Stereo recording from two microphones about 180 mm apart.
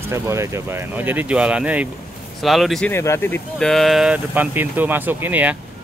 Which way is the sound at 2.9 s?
15° left (ahead or behind).